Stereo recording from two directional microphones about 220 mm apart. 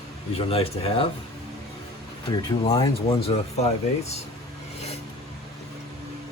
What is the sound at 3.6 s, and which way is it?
Speech, 30° left (ahead or behind).